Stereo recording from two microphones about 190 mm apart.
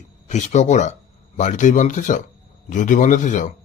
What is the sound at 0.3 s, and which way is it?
A man's voice, 40° left (ahead or behind).